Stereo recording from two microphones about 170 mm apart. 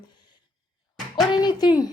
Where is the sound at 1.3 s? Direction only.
25° left (ahead or behind).